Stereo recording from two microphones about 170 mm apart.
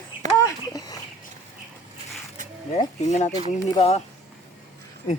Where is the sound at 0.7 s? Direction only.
20° left (ahead or behind).